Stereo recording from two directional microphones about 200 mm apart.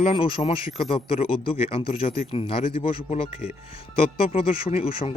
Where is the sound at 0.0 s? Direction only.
30° left (ahead or behind).